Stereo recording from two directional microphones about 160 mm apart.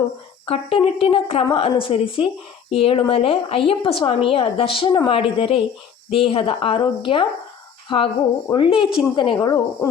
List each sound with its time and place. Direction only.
0.4 s a woman's voice: 35° left (ahead or behind)